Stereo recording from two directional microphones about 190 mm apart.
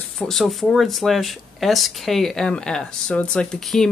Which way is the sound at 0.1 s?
Centre (ahead or behind).